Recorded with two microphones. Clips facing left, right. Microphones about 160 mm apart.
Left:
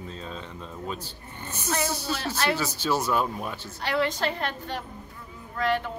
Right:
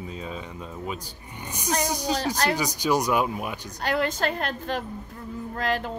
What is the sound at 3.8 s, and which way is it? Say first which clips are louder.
Speech: right 1 dB; 45° right (ahead or behind).